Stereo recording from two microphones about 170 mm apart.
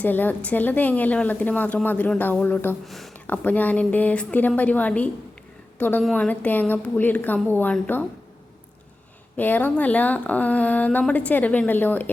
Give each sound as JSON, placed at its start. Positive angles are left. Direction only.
{"t": 0.0, "sound": "speech", "side_deg": 10}
{"t": 2.8, "sound": "speech", "side_deg": 0}
{"t": 9.4, "sound": "speech", "side_deg": 10}